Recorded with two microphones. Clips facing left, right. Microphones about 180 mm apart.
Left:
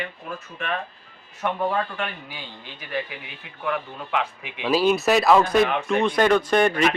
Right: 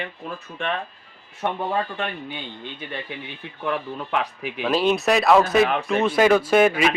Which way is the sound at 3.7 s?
40° right (ahead or behind).